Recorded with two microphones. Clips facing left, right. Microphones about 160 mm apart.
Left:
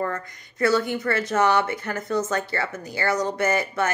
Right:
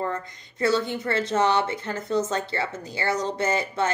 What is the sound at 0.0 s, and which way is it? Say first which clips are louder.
Speech: left 1 dB; 25° right (ahead or behind).